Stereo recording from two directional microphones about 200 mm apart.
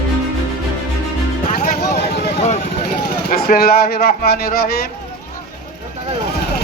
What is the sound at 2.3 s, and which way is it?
Vehicle, 35° left (ahead or behind).